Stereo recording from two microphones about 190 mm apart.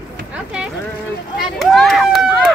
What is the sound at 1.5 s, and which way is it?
Speech, centre (ahead or behind).